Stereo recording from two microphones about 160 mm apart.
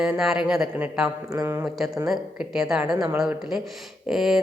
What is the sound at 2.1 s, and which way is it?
Speech, 5° right (ahead or behind).